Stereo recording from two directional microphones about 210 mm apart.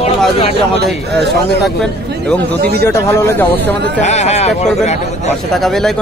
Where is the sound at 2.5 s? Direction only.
50° right (ahead or behind).